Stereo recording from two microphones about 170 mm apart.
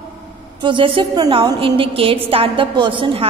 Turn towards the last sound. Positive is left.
turn(degrees=-30)  # may be behind; listen again after turning